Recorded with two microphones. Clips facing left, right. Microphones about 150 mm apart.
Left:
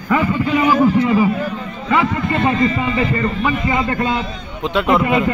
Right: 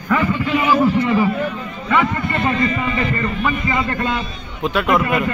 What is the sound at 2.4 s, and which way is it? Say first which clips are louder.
Speech: left 2 dB; 30° left (ahead or behind).